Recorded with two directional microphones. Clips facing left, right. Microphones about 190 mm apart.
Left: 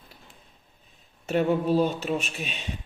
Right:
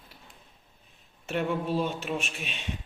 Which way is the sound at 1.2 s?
40° left (ahead or behind).